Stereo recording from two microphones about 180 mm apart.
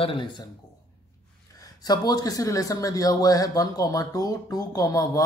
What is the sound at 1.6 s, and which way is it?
A man's voice, 20° left (ahead or behind).